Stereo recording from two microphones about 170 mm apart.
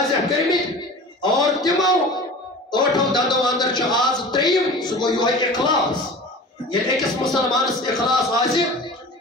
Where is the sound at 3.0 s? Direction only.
Centre (ahead or behind).